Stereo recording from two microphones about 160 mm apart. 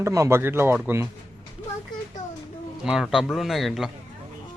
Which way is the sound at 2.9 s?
5° right (ahead or behind).